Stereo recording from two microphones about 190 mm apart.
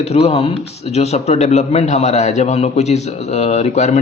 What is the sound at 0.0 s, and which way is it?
Speech, 30° left (ahead or behind).